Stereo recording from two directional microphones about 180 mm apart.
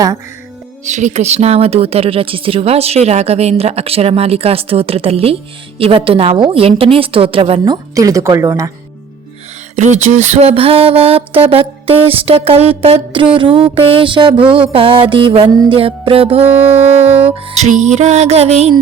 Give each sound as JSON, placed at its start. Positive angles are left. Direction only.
{"t": 0.9, "sound": "a woman's voice", "side_deg": -40}
{"t": 9.7, "sound": "a woman's voice", "side_deg": -40}
{"t": 16.5, "sound": "music", "side_deg": -10}
{"t": 17.3, "sound": "speech", "side_deg": -40}